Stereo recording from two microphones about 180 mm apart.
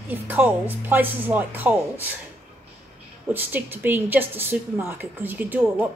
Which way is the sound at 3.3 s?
10° right (ahead or behind).